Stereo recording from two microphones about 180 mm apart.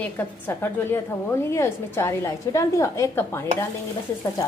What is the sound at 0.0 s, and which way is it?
A woman's voice, 10° left (ahead or behind).